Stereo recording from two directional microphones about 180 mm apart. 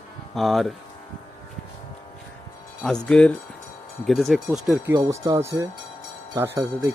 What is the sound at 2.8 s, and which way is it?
Speech, 5° left (ahead or behind).